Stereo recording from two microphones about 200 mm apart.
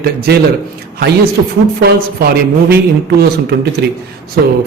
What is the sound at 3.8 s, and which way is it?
Speech, 55° right (ahead or behind).